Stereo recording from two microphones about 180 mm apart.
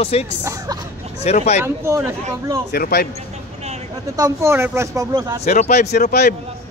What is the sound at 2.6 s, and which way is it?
Speech, 60° left (ahead or behind).